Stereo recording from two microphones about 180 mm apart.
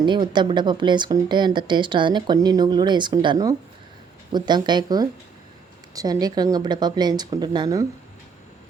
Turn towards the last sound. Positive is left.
turn(degrees=-20)  # may be behind; listen again after turning